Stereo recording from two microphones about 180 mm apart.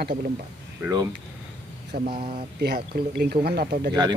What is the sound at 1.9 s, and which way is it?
Speech, 60° right (ahead or behind).